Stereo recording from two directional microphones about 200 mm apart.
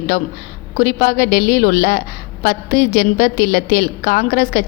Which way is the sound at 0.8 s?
40° left (ahead or behind).